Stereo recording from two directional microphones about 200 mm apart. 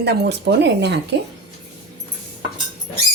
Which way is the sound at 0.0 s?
55° right (ahead or behind).